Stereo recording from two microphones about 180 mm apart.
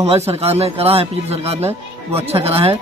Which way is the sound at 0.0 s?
35° right (ahead or behind).